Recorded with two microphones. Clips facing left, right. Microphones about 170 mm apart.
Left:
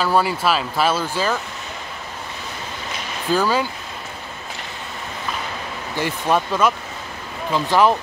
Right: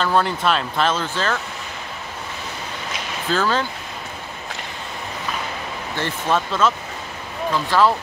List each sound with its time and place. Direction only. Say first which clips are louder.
0.0 s speech: left 1 dB; 5° left (ahead or behind)
3.3 s speech: left 2 dB; 10° left (ahead or behind)
5.9 s speech: left 2 dB; 10° left (ahead or behind)